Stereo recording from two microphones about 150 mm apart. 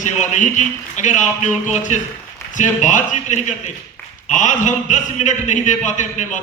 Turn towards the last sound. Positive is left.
turn(degrees=55)  # may be behind; listen again after turning